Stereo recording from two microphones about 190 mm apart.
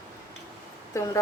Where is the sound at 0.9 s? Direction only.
15° left (ahead or behind).